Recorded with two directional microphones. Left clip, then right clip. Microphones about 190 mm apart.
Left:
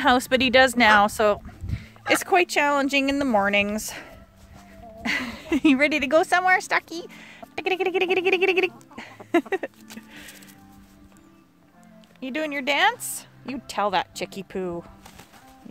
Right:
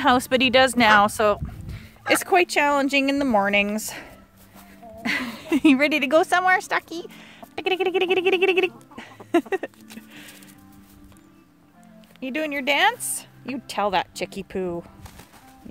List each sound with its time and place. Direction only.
0.0 s speech: centre (ahead or behind)
9.0 s a sound: 5° left (ahead or behind)
9.3 s speech: 5° left (ahead or behind)
9.9 s music: centre (ahead or behind)
12.2 s speech: centre (ahead or behind)